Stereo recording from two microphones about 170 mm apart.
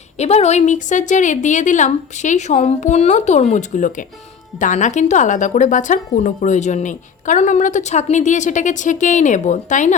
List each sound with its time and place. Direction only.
0.2 s speech: 40° left (ahead or behind)